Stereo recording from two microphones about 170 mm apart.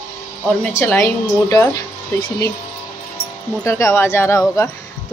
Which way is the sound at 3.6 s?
15° left (ahead or behind).